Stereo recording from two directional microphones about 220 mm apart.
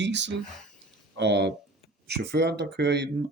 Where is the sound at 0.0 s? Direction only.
55° right (ahead or behind).